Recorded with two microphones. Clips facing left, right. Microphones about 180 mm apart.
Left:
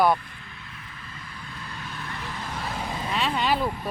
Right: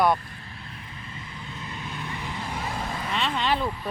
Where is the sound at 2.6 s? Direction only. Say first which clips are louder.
Left 2 dB; 5° left (ahead or behind).